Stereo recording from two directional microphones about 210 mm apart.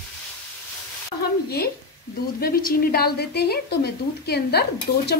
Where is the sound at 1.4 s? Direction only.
50° left (ahead or behind).